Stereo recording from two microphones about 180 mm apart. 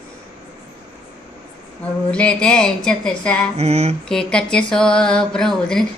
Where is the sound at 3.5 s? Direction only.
35° right (ahead or behind).